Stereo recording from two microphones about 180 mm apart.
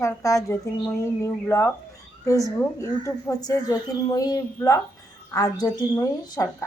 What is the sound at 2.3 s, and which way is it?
A woman's voice, 15° left (ahead or behind).